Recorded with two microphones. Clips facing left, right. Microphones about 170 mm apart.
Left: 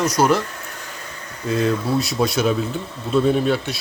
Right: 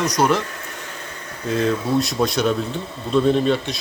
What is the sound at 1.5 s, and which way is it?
Speech, centre (ahead or behind).